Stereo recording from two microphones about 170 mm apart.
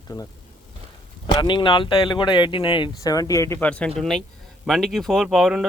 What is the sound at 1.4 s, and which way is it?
Speech, 30° left (ahead or behind).